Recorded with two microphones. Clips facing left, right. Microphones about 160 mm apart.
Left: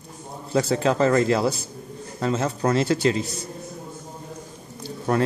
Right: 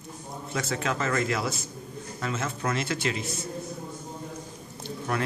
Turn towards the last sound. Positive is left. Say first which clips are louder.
# left 7 dB
turn(degrees=35)  # may be behind; listen again after turning